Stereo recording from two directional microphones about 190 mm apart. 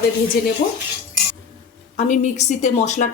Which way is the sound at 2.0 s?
40° left (ahead or behind).